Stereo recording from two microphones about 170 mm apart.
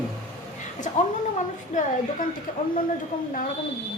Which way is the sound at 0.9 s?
45° left (ahead or behind).